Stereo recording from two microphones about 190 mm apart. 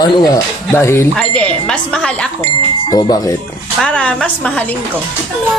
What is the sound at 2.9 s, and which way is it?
Speech, 20° left (ahead or behind).